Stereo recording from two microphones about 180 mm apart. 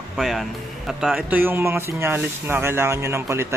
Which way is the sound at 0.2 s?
Centre (ahead or behind).